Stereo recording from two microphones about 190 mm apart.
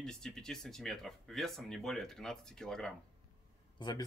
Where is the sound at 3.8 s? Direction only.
25° left (ahead or behind).